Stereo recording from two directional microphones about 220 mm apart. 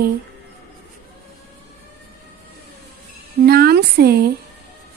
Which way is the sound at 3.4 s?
45° right (ahead or behind).